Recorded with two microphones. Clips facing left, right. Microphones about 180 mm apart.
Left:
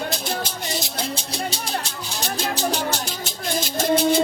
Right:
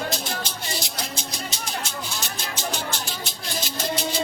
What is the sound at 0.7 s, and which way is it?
Music, 25° left (ahead or behind).